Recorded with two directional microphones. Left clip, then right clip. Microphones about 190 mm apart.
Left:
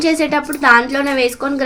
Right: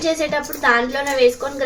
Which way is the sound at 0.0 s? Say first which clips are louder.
Left 4 dB; 60° left (ahead or behind).